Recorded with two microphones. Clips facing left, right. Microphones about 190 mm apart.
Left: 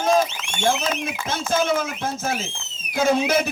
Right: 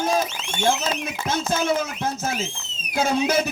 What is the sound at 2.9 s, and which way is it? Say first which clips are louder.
Speech: left 2 dB; 50° left (ahead or behind).